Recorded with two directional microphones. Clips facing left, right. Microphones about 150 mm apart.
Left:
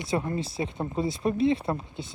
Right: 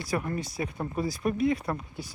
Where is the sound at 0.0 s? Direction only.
25° left (ahead or behind).